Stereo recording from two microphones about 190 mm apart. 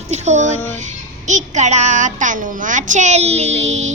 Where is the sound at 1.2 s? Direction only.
40° right (ahead or behind).